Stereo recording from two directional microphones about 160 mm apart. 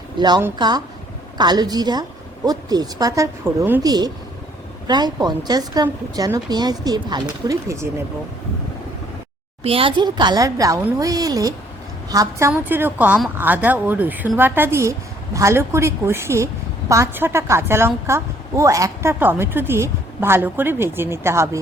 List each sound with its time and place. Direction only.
0.2 s speech: 25° right (ahead or behind)
9.6 s a woman's voice: 35° right (ahead or behind); by 21.6 s 15° right (ahead or behind)